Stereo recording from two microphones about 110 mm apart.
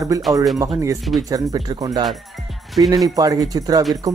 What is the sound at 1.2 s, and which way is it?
Speech, 35° right (ahead or behind).